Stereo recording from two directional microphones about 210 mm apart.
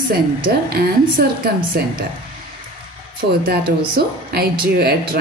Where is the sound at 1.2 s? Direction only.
50° right (ahead or behind).